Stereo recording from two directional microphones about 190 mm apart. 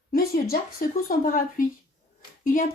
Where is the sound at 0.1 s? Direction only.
50° left (ahead or behind).